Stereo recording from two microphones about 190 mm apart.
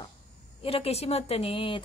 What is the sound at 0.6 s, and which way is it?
A woman's voice, 30° left (ahead or behind).